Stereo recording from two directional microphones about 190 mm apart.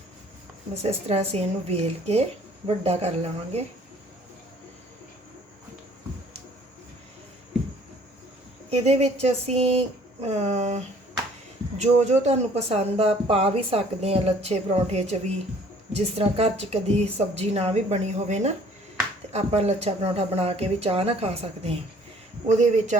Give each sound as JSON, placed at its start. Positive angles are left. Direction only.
{"t": 0.7, "sound": "speech", "side_deg": -35}
{"t": 8.7, "sound": "speech", "side_deg": -35}